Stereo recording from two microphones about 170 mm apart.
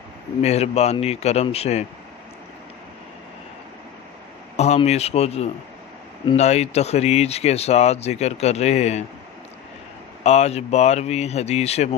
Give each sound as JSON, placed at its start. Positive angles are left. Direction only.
{"t": 0.4, "sound": "speech", "side_deg": 40}
{"t": 4.5, "sound": "speech", "side_deg": 40}
{"t": 10.2, "sound": "speech", "side_deg": 40}